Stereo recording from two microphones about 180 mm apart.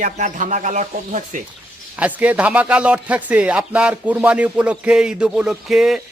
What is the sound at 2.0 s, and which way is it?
A man's voice, 10° right (ahead or behind).